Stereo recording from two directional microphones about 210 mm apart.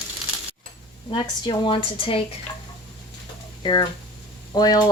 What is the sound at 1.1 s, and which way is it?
A woman's voice, 25° left (ahead or behind).